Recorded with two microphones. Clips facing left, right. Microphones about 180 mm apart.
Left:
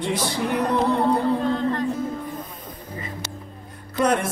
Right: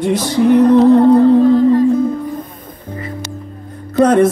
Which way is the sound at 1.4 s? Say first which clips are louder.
Right 13 dB; 5° right (ahead or behind).